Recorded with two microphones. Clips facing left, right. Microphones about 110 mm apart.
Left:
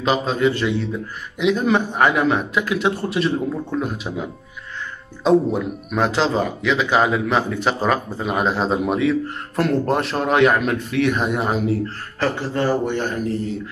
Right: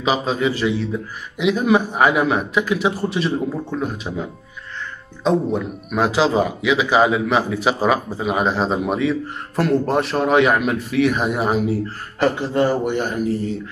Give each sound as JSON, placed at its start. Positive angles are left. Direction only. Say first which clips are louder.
{"t": 0.0, "sound": "speech", "louder": "left 1 dB", "side_deg": -5}
{"t": 12.2, "sound": "a man's voice", "louder": "right 4 dB", "side_deg": -15}